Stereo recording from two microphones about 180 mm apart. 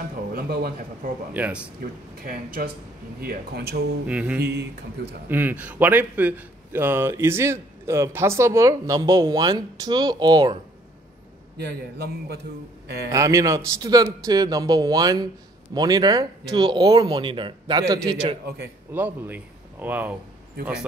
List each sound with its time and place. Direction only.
0.3 s a man's voice: 55° right (ahead or behind)
1.3 s a man's voice: 5° right (ahead or behind)
1.8 s a man's voice: 55° right (ahead or behind)
4.1 s a man's voice: 5° right (ahead or behind); by 10.6 s 25° right (ahead or behind)
11.5 s a man's voice: 65° right (ahead or behind)
13.1 s a man's voice: 15° right (ahead or behind)